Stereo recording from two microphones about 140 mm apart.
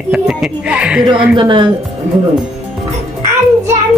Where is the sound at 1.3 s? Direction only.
35° right (ahead or behind).